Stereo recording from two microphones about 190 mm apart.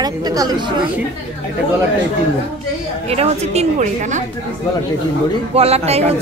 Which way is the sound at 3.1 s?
35° right (ahead or behind).